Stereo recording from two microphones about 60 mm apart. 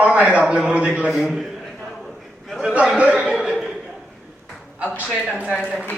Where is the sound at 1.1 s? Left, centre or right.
Centre.